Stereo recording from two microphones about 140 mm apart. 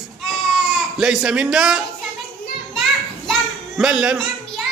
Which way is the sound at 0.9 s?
5° right (ahead or behind).